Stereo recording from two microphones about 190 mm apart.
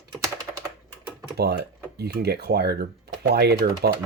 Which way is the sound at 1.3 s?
60° right (ahead or behind).